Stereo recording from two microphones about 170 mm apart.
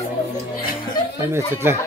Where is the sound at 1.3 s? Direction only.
15° right (ahead or behind).